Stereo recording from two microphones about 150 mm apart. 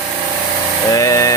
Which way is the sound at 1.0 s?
20° left (ahead or behind).